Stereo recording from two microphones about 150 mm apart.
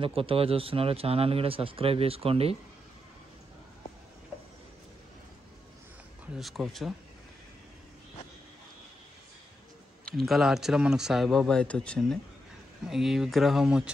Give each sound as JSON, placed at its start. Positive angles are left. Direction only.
{"t": 0.0, "sound": "speech", "side_deg": -35}
{"t": 6.3, "sound": "speech", "side_deg": 0}
{"t": 10.0, "sound": "speech", "side_deg": 0}